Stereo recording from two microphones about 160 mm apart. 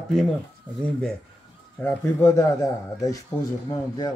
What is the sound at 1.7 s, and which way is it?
Speech, 15° left (ahead or behind).